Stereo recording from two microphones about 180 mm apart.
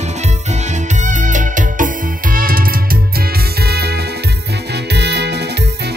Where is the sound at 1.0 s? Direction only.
45° right (ahead or behind).